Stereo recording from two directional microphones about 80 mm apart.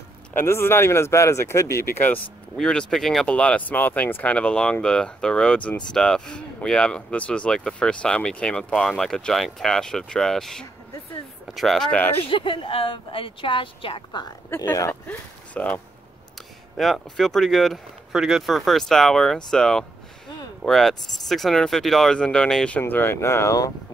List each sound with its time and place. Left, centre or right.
0.4 s speech: left
2.0 s speech: left
2.5 s speech: centre
11.9 s speech: left
12.3 s speech: left
14.5 s speech: left
14.9 s speech: centre
16.3 s speech: centre
22.8 s speech: left